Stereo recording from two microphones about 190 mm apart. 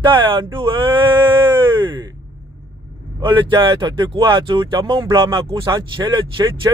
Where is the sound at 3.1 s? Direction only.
25° right (ahead or behind).